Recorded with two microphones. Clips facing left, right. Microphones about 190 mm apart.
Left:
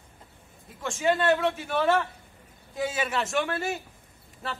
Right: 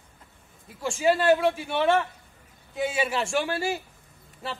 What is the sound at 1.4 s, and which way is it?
Speech, 30° right (ahead or behind).